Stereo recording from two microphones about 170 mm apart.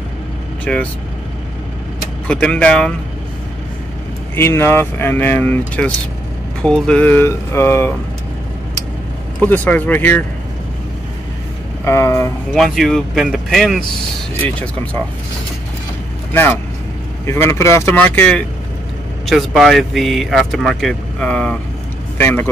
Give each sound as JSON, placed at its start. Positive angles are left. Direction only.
{"t": 0.7, "sound": "speech", "side_deg": 5}
{"t": 2.2, "sound": "speech", "side_deg": 5}
{"t": 4.4, "sound": "speech", "side_deg": 15}
{"t": 9.4, "sound": "speech", "side_deg": 10}
{"t": 11.8, "sound": "speech", "side_deg": 15}
{"t": 12.5, "sound": "speech", "side_deg": 0}
{"t": 17.3, "sound": "speech", "side_deg": 15}